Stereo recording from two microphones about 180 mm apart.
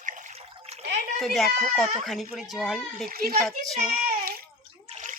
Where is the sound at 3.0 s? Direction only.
55° right (ahead or behind).